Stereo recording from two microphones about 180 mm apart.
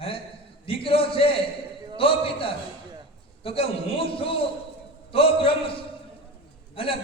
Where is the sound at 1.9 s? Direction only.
30° left (ahead or behind).